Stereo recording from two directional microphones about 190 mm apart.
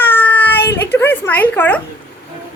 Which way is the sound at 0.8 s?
10° left (ahead or behind).